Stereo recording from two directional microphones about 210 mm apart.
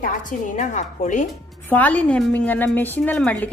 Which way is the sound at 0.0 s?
40° left (ahead or behind).